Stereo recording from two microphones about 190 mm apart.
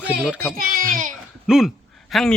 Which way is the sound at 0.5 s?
50° right (ahead or behind).